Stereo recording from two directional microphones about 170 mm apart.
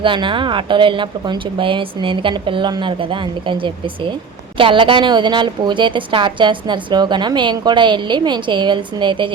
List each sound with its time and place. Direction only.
0.0 s a woman's voice: 30° right (ahead or behind)